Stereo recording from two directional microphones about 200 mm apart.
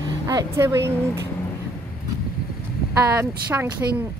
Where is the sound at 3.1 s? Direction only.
10° right (ahead or behind).